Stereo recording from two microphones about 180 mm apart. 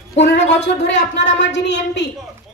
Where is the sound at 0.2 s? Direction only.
75° left (ahead or behind).